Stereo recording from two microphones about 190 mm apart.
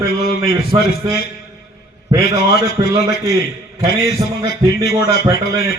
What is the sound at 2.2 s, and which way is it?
Speech, 55° left (ahead or behind).